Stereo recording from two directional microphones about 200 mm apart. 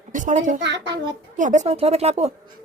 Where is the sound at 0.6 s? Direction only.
60° right (ahead or behind).